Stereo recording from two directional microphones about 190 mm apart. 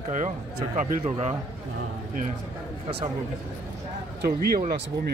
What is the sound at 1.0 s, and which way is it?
Speech, 35° right (ahead or behind).